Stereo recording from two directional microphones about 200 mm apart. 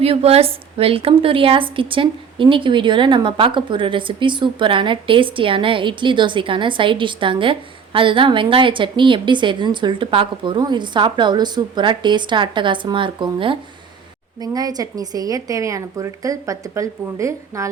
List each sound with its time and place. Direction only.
0.0 s a woman's voice: 30° right (ahead or behind); by 17.7 s 15° right (ahead or behind)